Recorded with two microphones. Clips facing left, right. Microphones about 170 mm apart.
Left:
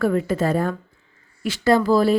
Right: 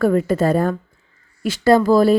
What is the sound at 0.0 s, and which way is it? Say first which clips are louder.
Speech: right 4 dB; 40° right (ahead or behind).